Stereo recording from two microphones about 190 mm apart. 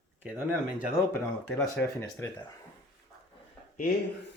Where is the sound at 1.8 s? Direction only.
15° left (ahead or behind).